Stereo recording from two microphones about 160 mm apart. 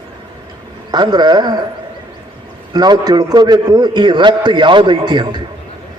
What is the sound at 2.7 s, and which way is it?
A man's voice, 25° right (ahead or behind).